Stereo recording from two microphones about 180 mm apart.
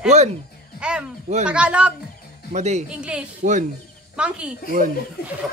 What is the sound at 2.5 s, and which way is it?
Speech, 40° right (ahead or behind).